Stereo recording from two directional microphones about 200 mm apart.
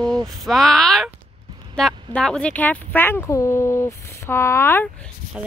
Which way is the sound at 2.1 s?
5° left (ahead or behind).